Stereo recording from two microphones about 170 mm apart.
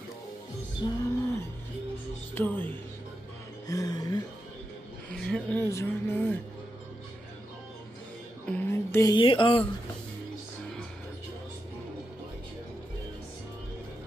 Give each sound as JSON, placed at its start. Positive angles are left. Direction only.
{"t": 0.8, "sound": "music", "side_deg": 25}
{"t": 2.3, "sound": "speech", "side_deg": 10}
{"t": 3.6, "sound": "music", "side_deg": 20}
{"t": 5.1, "sound": "speech", "side_deg": 5}
{"t": 8.5, "sound": "a sound", "side_deg": 10}
{"t": 9.1, "sound": "speech", "side_deg": 30}